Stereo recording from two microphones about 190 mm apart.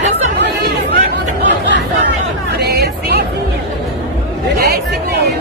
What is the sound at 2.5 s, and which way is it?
Music, 60° right (ahead or behind).